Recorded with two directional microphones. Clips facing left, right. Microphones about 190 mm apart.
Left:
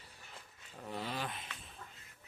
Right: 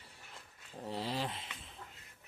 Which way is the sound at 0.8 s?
30° right (ahead or behind).